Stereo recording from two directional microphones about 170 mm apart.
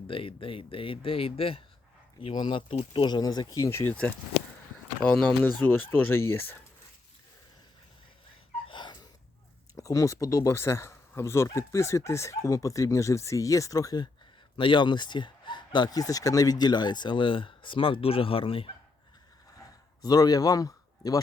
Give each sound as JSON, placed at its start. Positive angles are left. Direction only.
{"t": 0.1, "sound": "speech", "side_deg": 30}
{"t": 8.6, "sound": "gasp", "side_deg": 30}
{"t": 9.7, "sound": "speech", "side_deg": 20}
{"t": 19.5, "sound": "a sound", "side_deg": 20}